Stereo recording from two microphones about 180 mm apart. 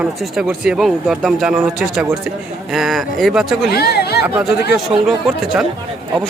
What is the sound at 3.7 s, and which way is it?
Speech, 60° left (ahead or behind).